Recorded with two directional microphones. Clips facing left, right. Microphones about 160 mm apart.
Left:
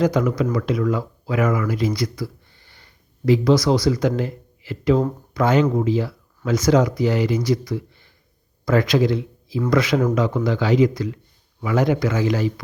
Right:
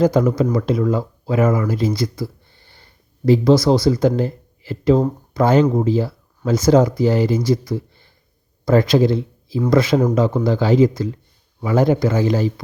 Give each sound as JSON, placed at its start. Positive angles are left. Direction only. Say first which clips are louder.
{"t": 0.0, "sound": "speech", "louder": "right 4 dB", "side_deg": -30}